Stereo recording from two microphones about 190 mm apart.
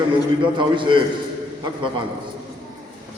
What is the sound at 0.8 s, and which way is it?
Speech, 25° right (ahead or behind).